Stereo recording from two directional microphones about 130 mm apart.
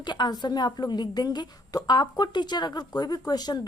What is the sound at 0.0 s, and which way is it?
A woman's voice, 35° left (ahead or behind).